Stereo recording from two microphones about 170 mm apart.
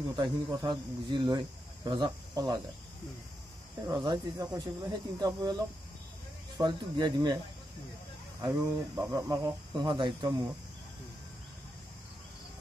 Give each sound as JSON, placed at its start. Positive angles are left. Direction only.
{"t": 0.1, "sound": "speech", "side_deg": -25}
{"t": 3.8, "sound": "speech", "side_deg": -25}
{"t": 6.6, "sound": "speech", "side_deg": -25}
{"t": 8.4, "sound": "speech", "side_deg": -20}